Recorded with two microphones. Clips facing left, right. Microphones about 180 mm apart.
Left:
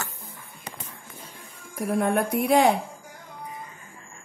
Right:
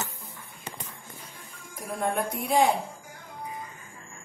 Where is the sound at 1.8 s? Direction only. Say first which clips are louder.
Left 5 dB; 70° left (ahead or behind).